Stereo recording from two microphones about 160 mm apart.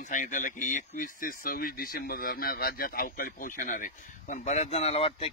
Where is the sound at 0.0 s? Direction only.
55° left (ahead or behind).